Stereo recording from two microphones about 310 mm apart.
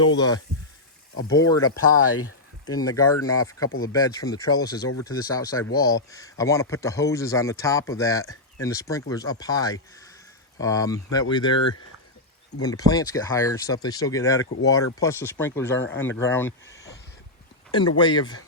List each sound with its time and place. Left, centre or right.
0.2 s speech: centre
1.9 s speech: left
2.6 s speech: centre
17.7 s speech: centre